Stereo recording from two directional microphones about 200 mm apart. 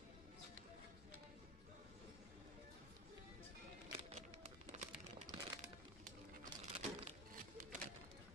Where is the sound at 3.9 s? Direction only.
30° right (ahead or behind).